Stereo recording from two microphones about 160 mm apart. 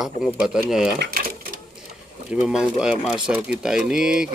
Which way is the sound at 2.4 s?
5° right (ahead or behind).